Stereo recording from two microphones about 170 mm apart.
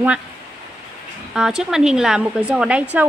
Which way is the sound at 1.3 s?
5° right (ahead or behind).